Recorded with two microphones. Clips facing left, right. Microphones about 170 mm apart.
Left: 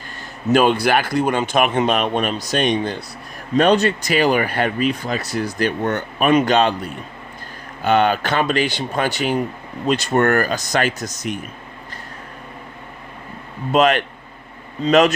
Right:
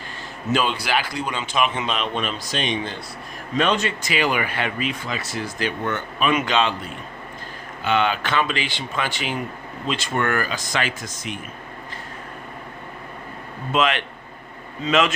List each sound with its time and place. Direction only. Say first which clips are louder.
0.5 s speech: left 7 dB; 50° left (ahead or behind)
7.9 s speech: left 5 dB; 45° left (ahead or behind)
13.7 s speech: left 6 dB; 40° left (ahead or behind)